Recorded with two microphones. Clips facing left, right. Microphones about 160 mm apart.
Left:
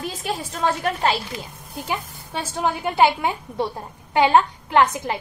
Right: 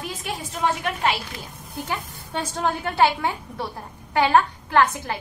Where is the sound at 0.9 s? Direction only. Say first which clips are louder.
Left 4 dB; 40° left (ahead or behind).